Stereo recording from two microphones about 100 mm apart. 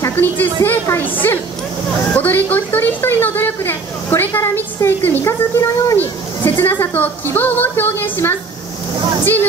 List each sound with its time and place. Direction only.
0.1 s a woman's voice: 20° left (ahead or behind)
5.9 s a sound: 20° left (ahead or behind)
7.3 s music: 20° left (ahead or behind)